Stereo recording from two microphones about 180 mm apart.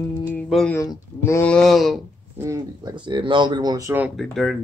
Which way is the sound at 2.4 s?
20° right (ahead or behind).